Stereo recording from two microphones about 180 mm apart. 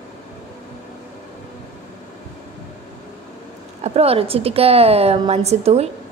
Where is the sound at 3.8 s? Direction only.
35° right (ahead or behind).